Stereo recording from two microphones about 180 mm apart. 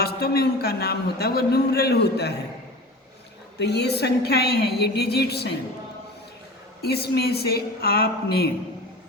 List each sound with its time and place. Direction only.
0.0 s a man's voice: 60° left (ahead or behind)
3.6 s a man's voice: 65° left (ahead or behind)
6.8 s a man's voice: 65° left (ahead or behind)